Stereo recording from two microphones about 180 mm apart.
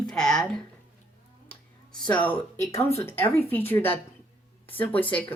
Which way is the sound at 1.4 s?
5° left (ahead or behind).